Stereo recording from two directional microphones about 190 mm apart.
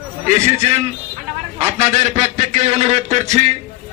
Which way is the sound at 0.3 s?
35° right (ahead or behind).